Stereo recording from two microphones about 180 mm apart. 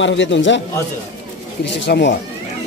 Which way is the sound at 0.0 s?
90° left.